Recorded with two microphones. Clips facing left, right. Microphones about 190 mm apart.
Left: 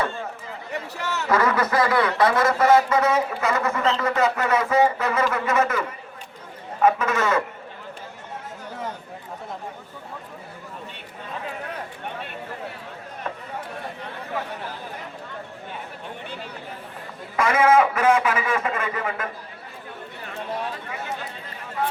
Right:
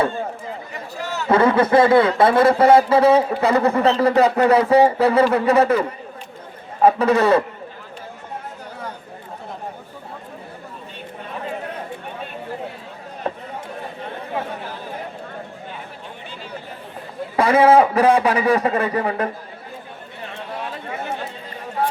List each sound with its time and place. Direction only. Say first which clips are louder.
0.7 s a sound: left 3 dB; 70° left (ahead or behind)
1.3 s speech: right 7 dB; 30° right (ahead or behind)
6.8 s speech: right 6 dB; 35° right (ahead or behind)
13.2 s chatter: right 7 dB; 35° right (ahead or behind)
17.3 s speech: right 5 dB; 35° right (ahead or behind)